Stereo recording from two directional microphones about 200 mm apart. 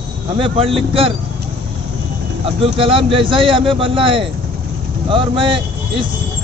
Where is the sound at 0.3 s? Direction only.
25° right (ahead or behind).